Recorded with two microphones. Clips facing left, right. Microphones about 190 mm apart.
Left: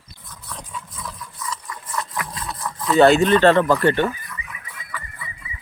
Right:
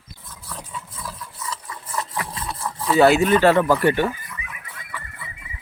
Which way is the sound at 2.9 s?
5° right (ahead or behind).